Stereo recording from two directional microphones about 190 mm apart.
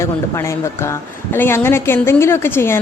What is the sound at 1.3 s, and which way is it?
A woman's voice, 10° left (ahead or behind).